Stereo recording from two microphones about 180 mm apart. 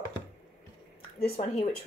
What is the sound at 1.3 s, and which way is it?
Speech, 35° left (ahead or behind).